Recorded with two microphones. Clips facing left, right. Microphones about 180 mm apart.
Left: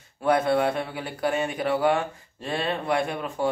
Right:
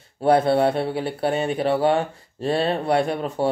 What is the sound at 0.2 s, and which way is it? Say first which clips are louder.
Speech: right 4 dB; 30° right (ahead or behind).